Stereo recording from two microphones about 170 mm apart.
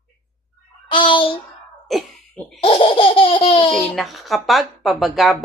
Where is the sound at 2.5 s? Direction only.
35° left (ahead or behind).